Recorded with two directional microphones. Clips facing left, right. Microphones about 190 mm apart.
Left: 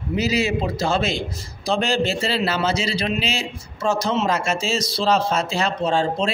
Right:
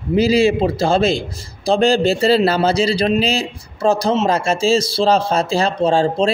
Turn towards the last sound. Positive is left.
turn(degrees=-35)  # may be behind; listen again after turning